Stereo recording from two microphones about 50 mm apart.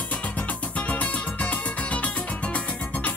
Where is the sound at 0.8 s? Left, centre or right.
Left.